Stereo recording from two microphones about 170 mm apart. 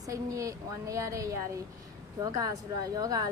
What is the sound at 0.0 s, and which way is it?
A woman's voice, 20° right (ahead or behind).